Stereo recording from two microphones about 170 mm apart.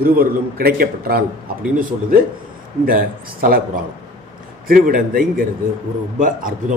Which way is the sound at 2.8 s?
55° right (ahead or behind).